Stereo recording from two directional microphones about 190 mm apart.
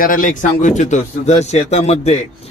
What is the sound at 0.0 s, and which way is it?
A man's voice, 45° left (ahead or behind).